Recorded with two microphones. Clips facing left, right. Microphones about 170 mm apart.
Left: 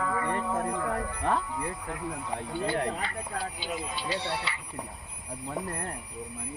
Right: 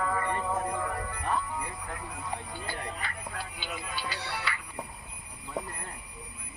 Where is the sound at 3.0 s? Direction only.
30° left (ahead or behind).